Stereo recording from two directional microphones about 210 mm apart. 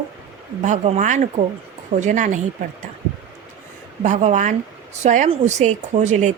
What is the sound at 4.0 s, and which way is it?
A woman's voice, 35° right (ahead or behind).